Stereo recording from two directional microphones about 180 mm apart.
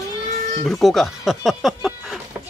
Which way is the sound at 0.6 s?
Centre (ahead or behind).